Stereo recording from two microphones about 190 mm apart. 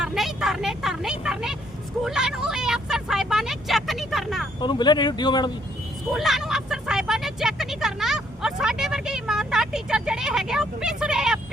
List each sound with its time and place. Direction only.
0.0 s vehicle: centre (ahead or behind)
4.6 s speech: 25° left (ahead or behind)
6.1 s speech: centre (ahead or behind)